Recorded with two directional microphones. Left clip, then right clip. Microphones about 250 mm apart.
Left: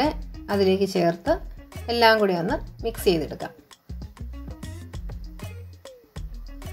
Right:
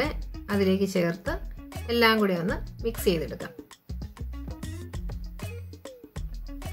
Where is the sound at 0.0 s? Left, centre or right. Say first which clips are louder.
Left 5 dB; centre.